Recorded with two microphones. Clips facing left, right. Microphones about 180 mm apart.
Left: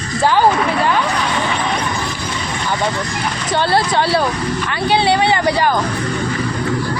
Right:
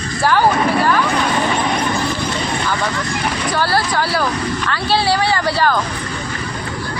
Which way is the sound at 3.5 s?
25° left (ahead or behind).